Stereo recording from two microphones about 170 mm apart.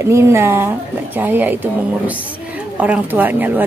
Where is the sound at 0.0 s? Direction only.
15° right (ahead or behind).